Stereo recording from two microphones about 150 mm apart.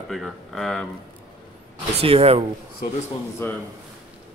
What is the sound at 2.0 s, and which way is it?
Speech, 40° right (ahead or behind).